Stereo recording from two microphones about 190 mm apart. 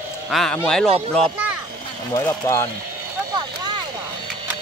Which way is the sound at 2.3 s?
15° left (ahead or behind).